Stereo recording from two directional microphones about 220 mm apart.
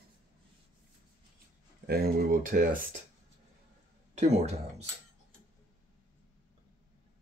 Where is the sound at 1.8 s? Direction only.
45° right (ahead or behind).